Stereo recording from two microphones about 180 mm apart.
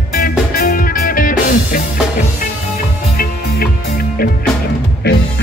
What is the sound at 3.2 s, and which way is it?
Music, 55° left (ahead or behind).